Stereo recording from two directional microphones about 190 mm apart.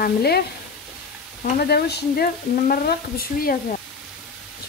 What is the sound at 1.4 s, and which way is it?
Speech, 55° left (ahead or behind).